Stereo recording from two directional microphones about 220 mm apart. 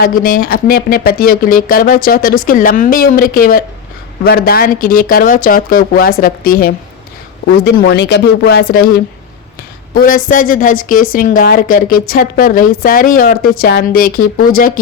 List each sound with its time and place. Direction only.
0.0 s a woman's voice: 40° left (ahead or behind)
9.9 s a woman's voice: 40° left (ahead or behind)